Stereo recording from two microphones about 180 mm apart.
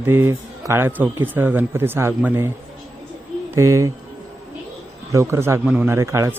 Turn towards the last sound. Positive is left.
turn(degrees=-15)  # may be behind; listen again after turning